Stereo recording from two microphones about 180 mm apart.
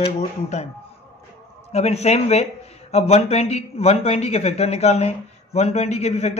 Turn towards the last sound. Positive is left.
turn(degrees=35)  # may be behind; listen again after turning